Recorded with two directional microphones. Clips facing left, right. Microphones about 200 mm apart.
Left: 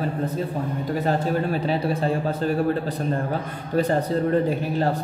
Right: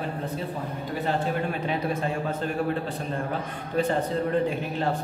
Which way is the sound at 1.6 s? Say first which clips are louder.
Left 4 dB; 35° left (ahead or behind).